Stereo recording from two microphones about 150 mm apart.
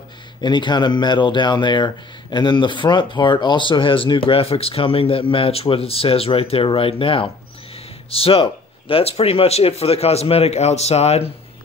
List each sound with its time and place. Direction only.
0.4 s speech: 30° left (ahead or behind)